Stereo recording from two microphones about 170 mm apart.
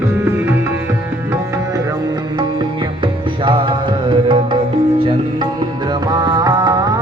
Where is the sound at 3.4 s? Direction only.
30° right (ahead or behind).